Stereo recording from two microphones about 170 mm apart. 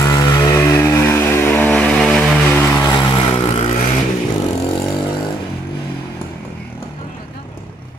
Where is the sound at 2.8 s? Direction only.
25° left (ahead or behind).